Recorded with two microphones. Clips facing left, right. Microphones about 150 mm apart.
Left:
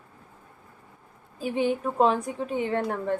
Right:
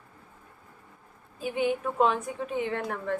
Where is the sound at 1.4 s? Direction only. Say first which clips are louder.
Left 2 dB; 35° left (ahead or behind).